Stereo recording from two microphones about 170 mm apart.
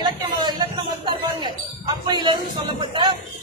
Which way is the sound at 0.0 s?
25° right (ahead or behind).